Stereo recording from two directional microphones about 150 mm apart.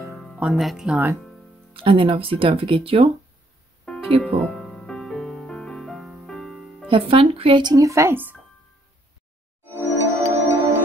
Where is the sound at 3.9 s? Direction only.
5° left (ahead or behind).